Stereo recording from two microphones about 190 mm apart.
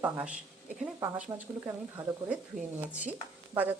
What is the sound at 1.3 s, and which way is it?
A woman's voice, 20° right (ahead or behind).